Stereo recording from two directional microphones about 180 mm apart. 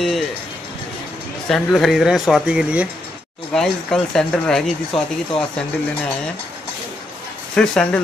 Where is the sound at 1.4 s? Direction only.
Centre (ahead or behind).